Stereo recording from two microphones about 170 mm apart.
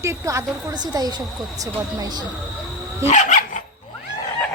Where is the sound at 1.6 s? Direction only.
20° right (ahead or behind).